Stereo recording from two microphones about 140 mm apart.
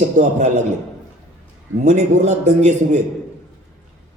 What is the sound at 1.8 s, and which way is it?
A man's voice, 55° right (ahead or behind).